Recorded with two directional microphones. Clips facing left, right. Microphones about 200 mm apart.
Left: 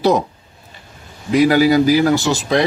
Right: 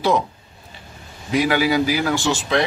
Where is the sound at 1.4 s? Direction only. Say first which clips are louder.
Left 7 dB; 40° left (ahead or behind).